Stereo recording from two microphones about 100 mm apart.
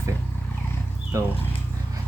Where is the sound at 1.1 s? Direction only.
30° right (ahead or behind).